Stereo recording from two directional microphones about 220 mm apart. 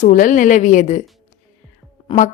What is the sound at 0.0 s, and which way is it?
A woman's voice, 35° left (ahead or behind).